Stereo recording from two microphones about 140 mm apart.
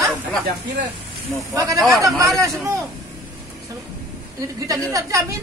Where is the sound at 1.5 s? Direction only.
25° right (ahead or behind).